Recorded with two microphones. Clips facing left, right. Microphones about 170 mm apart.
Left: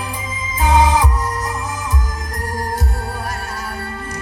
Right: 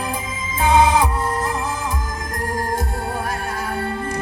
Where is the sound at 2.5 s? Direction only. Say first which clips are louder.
Even; 50° right (ahead or behind).